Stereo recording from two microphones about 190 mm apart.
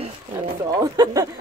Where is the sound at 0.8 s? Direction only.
20° right (ahead or behind).